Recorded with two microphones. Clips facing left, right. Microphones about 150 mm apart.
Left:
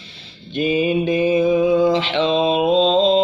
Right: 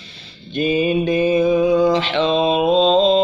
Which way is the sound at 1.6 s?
5° left (ahead or behind).